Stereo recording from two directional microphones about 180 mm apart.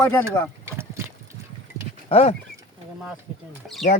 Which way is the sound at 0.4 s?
15° left (ahead or behind).